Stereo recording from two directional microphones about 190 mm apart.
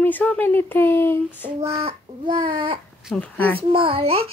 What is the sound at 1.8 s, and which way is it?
Speech, 25° right (ahead or behind).